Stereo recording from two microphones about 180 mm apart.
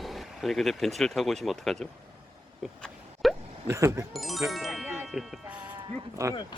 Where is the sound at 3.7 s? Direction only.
15° right (ahead or behind).